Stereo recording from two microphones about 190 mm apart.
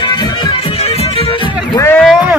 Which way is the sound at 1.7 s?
10° left (ahead or behind).